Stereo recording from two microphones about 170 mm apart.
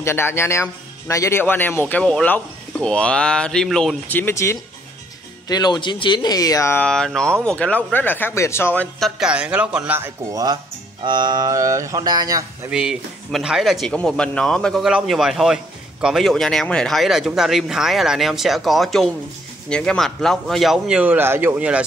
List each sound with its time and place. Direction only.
0.0 s speech: 15° left (ahead or behind)
9.0 s speech: 5° right (ahead or behind); by 12.4 s 25° right (ahead or behind)
12.6 s speech: 5° right (ahead or behind)